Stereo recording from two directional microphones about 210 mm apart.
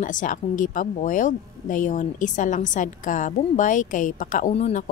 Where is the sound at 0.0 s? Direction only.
40° left (ahead or behind).